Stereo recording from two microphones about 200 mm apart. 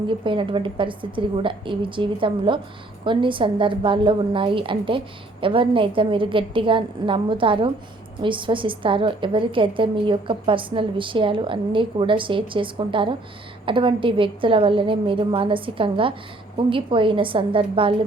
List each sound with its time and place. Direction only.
0.1 s a woman's voice: 25° right (ahead or behind)